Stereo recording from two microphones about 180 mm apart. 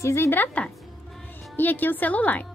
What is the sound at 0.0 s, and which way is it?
A woman's voice, 15° left (ahead or behind).